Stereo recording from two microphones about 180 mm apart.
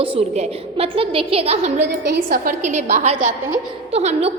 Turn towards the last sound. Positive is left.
turn(degrees=-35)  # may be behind; listen again after turning